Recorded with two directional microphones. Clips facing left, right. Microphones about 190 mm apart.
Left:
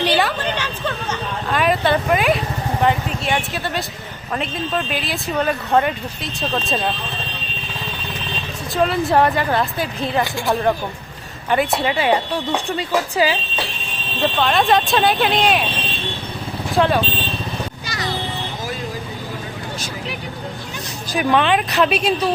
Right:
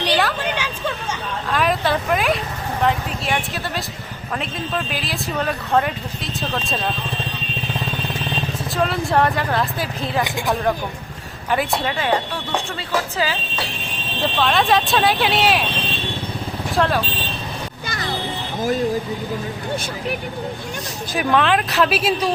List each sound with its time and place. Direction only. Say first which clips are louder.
0.0 s a sound: left 2 dB; centre (ahead or behind)
0.4 s a sound: left 1 dB; 10° right (ahead or behind)
1.5 s a sound: left 2 dB; centre (ahead or behind)
2.8 s vehicle: left 1 dB; centre (ahead or behind)
4.4 s speech: left 3 dB; centre (ahead or behind)
8.7 s speech: left 3 dB; centre (ahead or behind)
14.3 s speech: left 1 dB; centre (ahead or behind)
16.7 s speech: left 3 dB; centre (ahead or behind)
17.8 s music: right 2 dB; 50° right (ahead or behind)
21.2 s speech: left 1 dB; centre (ahead or behind)